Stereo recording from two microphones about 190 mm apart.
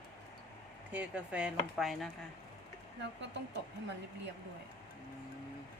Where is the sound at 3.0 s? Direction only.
65° right (ahead or behind).